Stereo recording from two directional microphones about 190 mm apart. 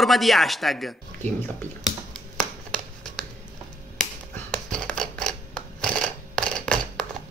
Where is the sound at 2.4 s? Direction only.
5° left (ahead or behind).